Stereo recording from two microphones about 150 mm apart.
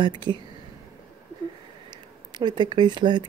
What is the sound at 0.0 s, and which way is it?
Speech, 30° right (ahead or behind).